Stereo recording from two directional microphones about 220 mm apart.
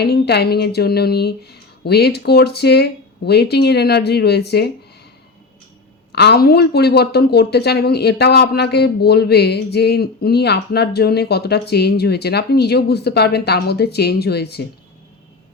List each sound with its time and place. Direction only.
0.0 s speech: 50° left (ahead or behind)
6.1 s speech: 50° left (ahead or behind)